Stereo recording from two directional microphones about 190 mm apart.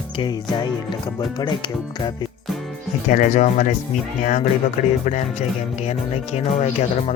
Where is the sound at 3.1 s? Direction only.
40° left (ahead or behind).